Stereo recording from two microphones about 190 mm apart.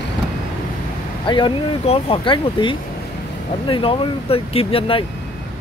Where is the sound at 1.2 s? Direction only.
25° left (ahead or behind).